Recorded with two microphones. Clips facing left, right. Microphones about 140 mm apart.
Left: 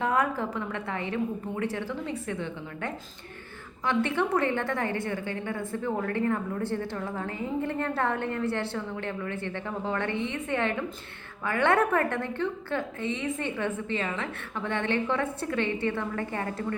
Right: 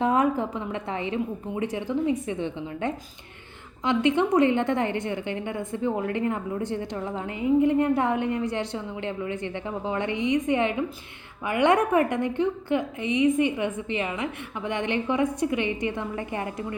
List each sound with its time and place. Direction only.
0.0 s a woman's voice: 20° right (ahead or behind)